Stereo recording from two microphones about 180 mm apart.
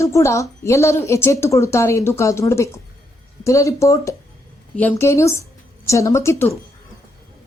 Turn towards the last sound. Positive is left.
turn(degrees=15)  # may be behind; listen again after turning